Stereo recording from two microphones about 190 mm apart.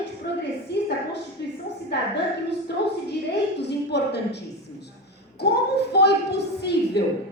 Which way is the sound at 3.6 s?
65° left (ahead or behind).